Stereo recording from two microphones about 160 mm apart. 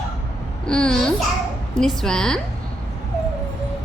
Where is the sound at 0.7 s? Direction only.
5° left (ahead or behind).